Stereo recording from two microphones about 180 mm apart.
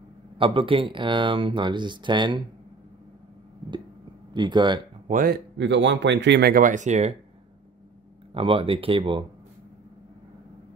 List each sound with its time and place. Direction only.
0.4 s speech: 30° right (ahead or behind)
4.3 s speech: 25° right (ahead or behind)
5.0 s speech: 50° right (ahead or behind)
5.6 s a man's voice: 85° right
6.5 s speech: 45° right (ahead or behind)
8.3 s speech: 30° right (ahead or behind)